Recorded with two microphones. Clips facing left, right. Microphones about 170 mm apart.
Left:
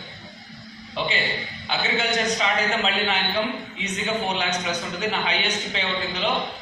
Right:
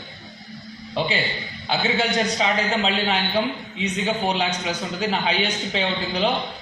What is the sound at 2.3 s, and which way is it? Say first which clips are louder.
A man's voice: right 2 dB; 35° right (ahead or behind).